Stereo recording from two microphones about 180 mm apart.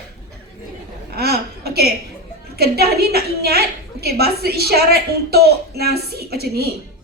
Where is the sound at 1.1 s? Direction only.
60° right (ahead or behind).